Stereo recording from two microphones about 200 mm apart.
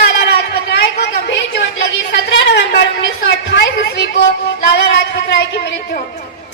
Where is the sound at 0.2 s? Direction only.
55° left (ahead or behind).